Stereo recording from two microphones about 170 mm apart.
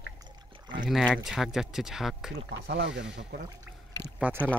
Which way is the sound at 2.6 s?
90° right.